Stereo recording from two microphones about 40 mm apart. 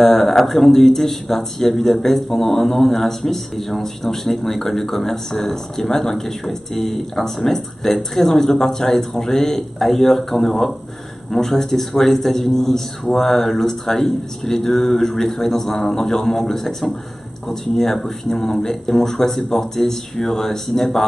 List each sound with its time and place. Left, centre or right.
0.0 s speech: centre